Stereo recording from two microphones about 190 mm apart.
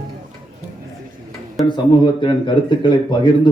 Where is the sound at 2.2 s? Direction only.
25° left (ahead or behind).